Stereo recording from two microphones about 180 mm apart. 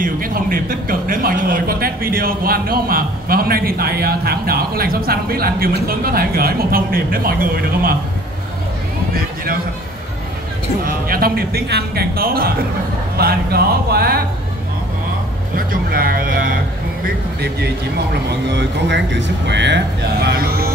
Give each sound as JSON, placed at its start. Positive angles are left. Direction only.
{"t": 0.0, "sound": "speech", "side_deg": -50}
{"t": 10.9, "sound": "speech", "side_deg": -55}
{"t": 15.5, "sound": "speech", "side_deg": -55}
{"t": 17.0, "sound": "speech", "side_deg": -65}
{"t": 18.6, "sound": "speech", "side_deg": -80}